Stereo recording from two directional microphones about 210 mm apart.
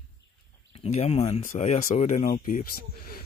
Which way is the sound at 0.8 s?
30° left (ahead or behind).